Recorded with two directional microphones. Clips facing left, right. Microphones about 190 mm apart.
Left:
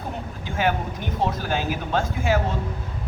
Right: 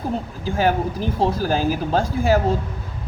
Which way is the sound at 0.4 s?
35° right (ahead or behind).